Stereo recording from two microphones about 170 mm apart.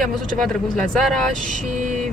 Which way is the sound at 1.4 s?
50° right (ahead or behind).